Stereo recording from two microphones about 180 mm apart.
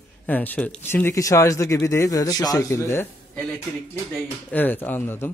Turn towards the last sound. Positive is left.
turn(degrees=10)  # may be behind; listen again after turning